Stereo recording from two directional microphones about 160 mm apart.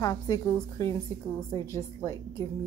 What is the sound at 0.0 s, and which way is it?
A woman's voice, 20° left (ahead or behind).